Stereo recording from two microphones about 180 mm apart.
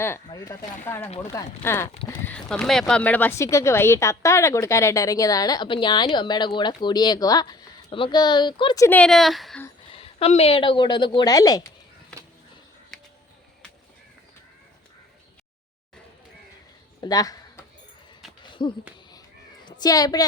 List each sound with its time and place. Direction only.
0.0 s speech: 15° left (ahead or behind); by 9.6 s centre (ahead or behind)
9.9 s speech: 30° left (ahead or behind)
17.0 s a sound: 20° left (ahead or behind)
18.6 s speech: 30° left (ahead or behind)